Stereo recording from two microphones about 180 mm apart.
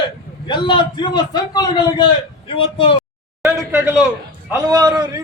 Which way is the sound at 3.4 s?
15° right (ahead or behind).